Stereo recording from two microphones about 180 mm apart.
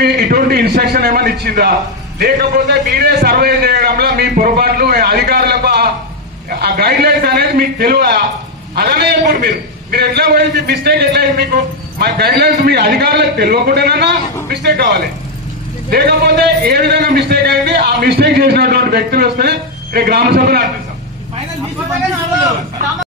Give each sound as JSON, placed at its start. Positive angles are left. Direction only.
{"t": 0.2, "sound": "a man's voice", "side_deg": -60}